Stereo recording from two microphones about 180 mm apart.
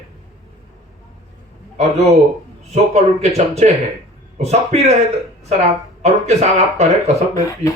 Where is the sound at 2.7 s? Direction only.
40° right (ahead or behind).